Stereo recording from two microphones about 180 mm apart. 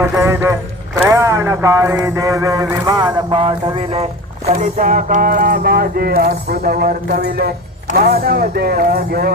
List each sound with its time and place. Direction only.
0.0 s a man's voice: 15° right (ahead or behind); by 4.0 s 30° right (ahead or behind)
4.5 s speech: 45° right (ahead or behind)